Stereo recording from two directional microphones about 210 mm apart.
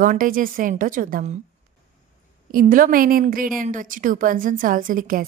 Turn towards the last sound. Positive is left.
turn(degrees=-40)  # may be behind; listen again after turning